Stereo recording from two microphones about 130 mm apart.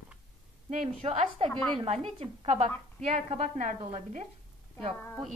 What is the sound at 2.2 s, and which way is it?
A woman's voice, 60° right (ahead or behind).